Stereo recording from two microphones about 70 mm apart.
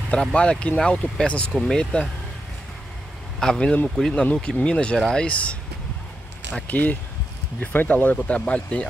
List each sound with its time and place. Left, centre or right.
0.1 s speech: centre
3.3 s speech: centre
6.7 s speech: left